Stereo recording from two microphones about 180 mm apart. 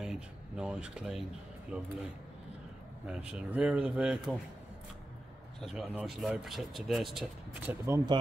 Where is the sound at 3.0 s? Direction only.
5° right (ahead or behind).